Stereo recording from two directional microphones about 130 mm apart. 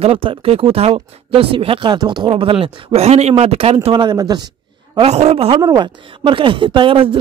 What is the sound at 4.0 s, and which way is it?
Speech, 35° right (ahead or behind).